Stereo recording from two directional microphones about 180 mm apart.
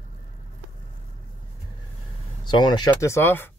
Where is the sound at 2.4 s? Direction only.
25° left (ahead or behind).